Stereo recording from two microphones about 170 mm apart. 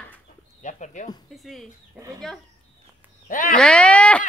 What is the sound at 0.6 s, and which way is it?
Speech, 45° left (ahead or behind).